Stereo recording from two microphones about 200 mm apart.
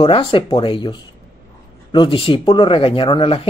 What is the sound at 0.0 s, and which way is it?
Speech, 25° left (ahead or behind).